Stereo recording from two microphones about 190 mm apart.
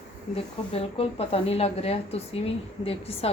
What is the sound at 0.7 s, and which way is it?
A woman's voice, 30° left (ahead or behind).